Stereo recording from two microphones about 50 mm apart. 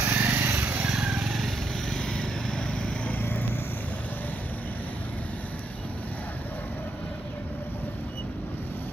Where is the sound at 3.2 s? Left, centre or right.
Left.